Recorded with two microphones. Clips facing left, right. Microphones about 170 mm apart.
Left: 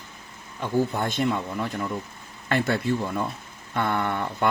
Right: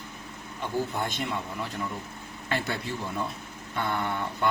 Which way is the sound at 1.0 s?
50° left (ahead or behind).